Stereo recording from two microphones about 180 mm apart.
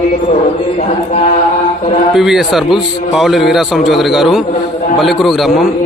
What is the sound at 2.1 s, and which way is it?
A man's voice, centre (ahead or behind).